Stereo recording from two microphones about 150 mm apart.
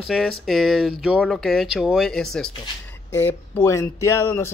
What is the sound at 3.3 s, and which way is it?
Speech, 15° left (ahead or behind).